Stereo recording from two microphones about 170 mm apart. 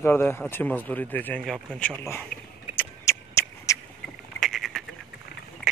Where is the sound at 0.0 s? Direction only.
15° left (ahead or behind).